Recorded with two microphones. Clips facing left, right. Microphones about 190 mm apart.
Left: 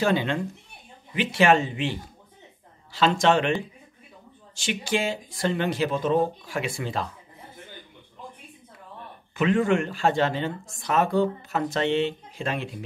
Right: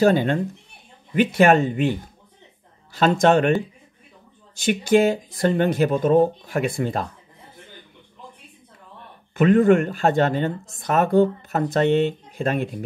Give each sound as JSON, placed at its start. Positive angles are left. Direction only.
{"t": 0.0, "sound": "a woman's voice", "side_deg": -45}
{"t": 4.6, "sound": "a woman's voice", "side_deg": -50}
{"t": 9.4, "sound": "a woman's voice", "side_deg": -50}